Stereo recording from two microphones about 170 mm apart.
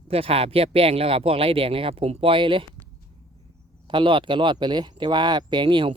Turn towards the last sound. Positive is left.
turn(degrees=-30)  # may be behind; listen again after turning